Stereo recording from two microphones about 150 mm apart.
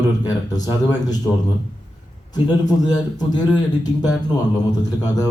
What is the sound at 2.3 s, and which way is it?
A man's voice, 25° left (ahead or behind).